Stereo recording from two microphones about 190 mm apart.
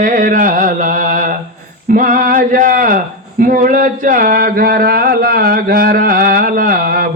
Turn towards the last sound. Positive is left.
turn(degrees=-50)  # may be behind; listen again after turning